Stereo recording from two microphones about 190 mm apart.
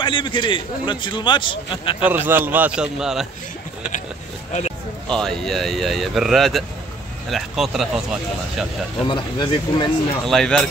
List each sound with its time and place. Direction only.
0.0 s a man's voice: 25° left (ahead or behind)
2.0 s a man's voice: 10° right (ahead or behind)
4.5 s a sound: 40° left (ahead or behind)
5.1 s speech: centre (ahead or behind)
9.0 s a man's voice: 25° left (ahead or behind)
10.2 s speech: centre (ahead or behind)